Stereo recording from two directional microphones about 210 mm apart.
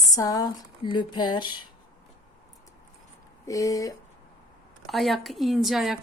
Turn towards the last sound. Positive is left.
turn(degrees=0)  # may be behind; listen again after turning